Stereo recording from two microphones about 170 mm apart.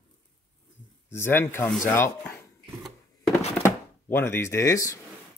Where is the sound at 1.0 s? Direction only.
15° left (ahead or behind).